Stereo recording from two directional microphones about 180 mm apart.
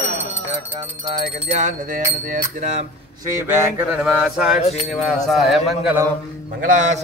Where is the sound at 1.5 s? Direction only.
40° right (ahead or behind).